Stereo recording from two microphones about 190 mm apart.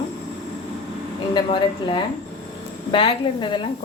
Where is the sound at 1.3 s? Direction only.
25° left (ahead or behind).